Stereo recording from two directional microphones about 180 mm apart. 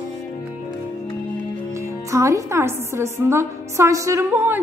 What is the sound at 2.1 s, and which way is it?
A woman's voice, 15° right (ahead or behind).